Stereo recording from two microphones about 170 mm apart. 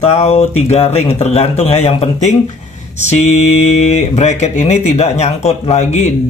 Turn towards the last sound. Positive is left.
turn(degrees=40)  # may be behind; listen again after turning